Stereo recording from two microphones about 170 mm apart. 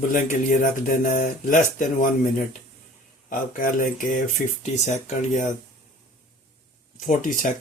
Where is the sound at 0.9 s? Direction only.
50° left (ahead or behind).